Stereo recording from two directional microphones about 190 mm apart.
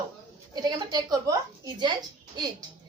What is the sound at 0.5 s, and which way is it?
A woman's voice, 20° right (ahead or behind).